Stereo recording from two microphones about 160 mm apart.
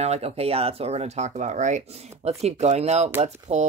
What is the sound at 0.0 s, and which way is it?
Speech, 40° right (ahead or behind).